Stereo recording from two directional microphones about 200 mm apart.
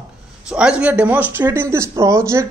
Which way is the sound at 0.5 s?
5° right (ahead or behind).